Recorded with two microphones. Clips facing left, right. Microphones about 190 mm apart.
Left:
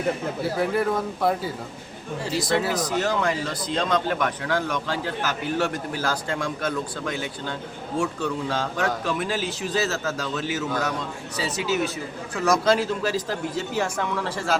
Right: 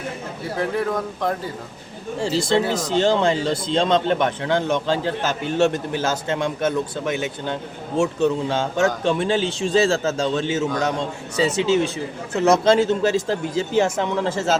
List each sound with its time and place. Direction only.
0.5 s speech: 5° left (ahead or behind)
2.2 s speech: 25° right (ahead or behind)